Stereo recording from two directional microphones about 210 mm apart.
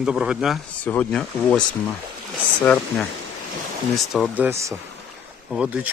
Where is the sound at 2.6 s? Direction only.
5° left (ahead or behind).